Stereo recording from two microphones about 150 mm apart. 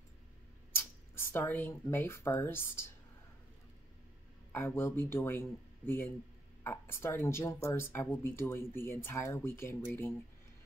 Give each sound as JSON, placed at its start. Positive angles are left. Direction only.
{"t": 0.7, "sound": "speech", "side_deg": 15}
{"t": 4.5, "sound": "speech", "side_deg": 15}